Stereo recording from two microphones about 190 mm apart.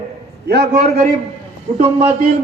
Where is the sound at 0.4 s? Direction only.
60° right (ahead or behind).